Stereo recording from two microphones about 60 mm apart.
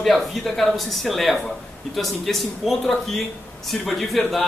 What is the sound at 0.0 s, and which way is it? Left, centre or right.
Speech, centre.